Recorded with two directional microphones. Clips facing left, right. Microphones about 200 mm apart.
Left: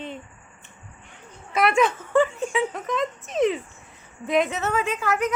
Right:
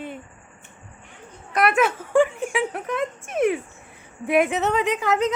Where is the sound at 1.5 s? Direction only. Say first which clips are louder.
Even; centre (ahead or behind).